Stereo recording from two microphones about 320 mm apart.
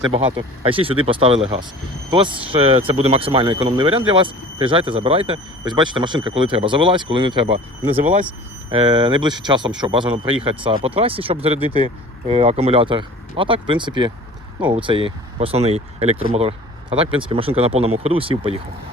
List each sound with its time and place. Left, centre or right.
0.3 s speech: centre